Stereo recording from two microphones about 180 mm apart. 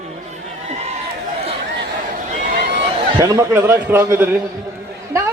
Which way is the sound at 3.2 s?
15° right (ahead or behind).